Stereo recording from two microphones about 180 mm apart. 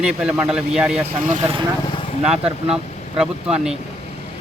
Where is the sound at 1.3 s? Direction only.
30° right (ahead or behind).